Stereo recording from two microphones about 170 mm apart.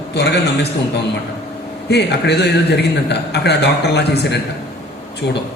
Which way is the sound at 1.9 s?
80° left.